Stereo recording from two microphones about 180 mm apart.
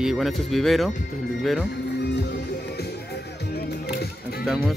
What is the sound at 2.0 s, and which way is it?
Music, 70° left (ahead or behind).